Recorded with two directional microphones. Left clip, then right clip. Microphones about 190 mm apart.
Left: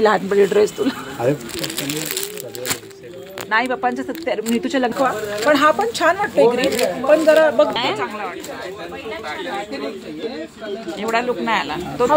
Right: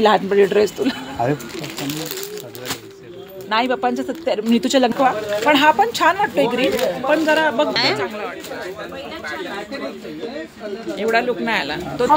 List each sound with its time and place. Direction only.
0.0 s speech: 20° right (ahead or behind)
3.4 s speech: 35° right (ahead or behind)
4.5 s speech: 40° right (ahead or behind)
7.7 s speech: 5° right (ahead or behind)
11.0 s speech: 15° right (ahead or behind)